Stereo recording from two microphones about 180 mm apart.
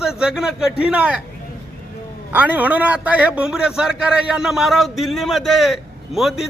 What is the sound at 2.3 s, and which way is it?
A man's voice, 10° right (ahead or behind).